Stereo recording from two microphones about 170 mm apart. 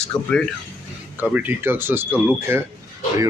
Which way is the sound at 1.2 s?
10° right (ahead or behind).